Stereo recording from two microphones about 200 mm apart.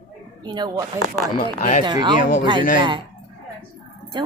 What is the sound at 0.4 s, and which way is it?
Speech, 20° right (ahead or behind).